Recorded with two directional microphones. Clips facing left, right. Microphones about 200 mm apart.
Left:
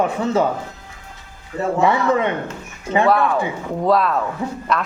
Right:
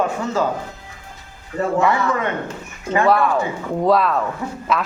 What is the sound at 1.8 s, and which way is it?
Speech, 20° left (ahead or behind).